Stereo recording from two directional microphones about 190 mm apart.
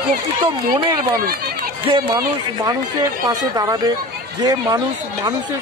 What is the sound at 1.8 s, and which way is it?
Speech, 25° right (ahead or behind).